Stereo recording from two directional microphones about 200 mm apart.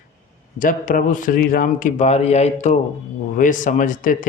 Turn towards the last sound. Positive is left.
turn(degrees=40)  # may be behind; listen again after turning